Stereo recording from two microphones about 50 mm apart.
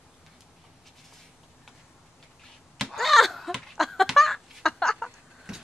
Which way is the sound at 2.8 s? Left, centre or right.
Centre.